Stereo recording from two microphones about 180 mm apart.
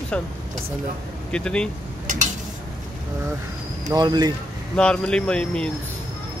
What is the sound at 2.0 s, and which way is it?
Dishes, 45° right (ahead or behind).